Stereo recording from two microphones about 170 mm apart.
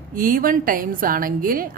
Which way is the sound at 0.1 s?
55° right (ahead or behind).